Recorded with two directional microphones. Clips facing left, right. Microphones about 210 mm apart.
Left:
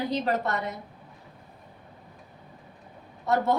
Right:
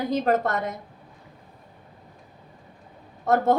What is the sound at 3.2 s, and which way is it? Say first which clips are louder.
Speech: right 4 dB; 50° right (ahead or behind).